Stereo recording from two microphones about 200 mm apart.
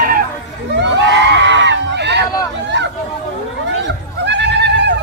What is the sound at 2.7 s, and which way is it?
Chatter, 65° right (ahead or behind).